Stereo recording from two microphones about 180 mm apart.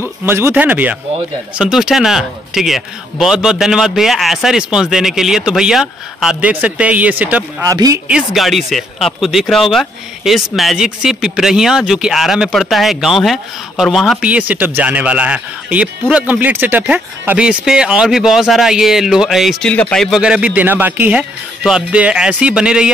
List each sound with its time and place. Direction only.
0.2 s speech: 15° right (ahead or behind)
7.6 s speech: 20° right (ahead or behind)
8.1 s speech: centre (ahead or behind)